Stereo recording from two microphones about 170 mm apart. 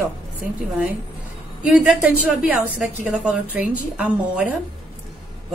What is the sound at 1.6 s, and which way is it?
A woman's voice, 5° right (ahead or behind).